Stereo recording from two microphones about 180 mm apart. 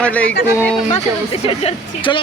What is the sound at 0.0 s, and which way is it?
Speech, 5° left (ahead or behind).